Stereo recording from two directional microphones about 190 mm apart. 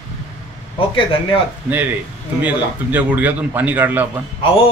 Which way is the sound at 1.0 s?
25° left (ahead or behind).